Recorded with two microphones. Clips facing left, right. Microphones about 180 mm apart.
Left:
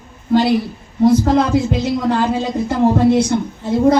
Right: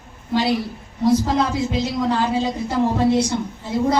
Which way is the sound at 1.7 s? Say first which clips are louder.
Left 4 dB; 55° left (ahead or behind).